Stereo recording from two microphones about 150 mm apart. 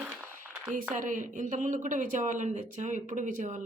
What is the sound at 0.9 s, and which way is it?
Speech, 60° right (ahead or behind).